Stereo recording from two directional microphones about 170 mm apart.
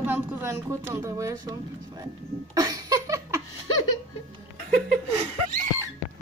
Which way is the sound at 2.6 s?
20° right (ahead or behind).